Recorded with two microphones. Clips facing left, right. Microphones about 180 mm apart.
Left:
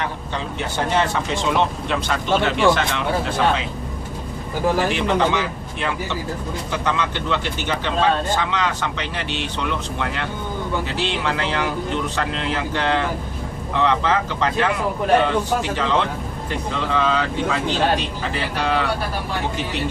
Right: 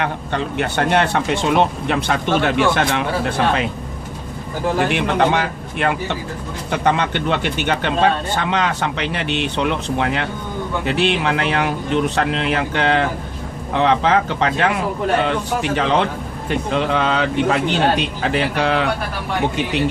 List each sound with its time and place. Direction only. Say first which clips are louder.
0.0 s speech: right 5 dB; 60° right (ahead or behind)
4.9 s speech: right 2 dB; 60° right (ahead or behind)